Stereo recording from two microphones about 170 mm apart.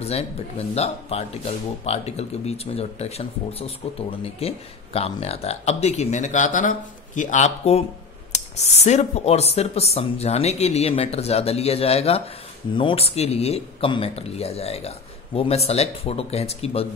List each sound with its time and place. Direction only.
0.0 s speech: 40° left (ahead or behind)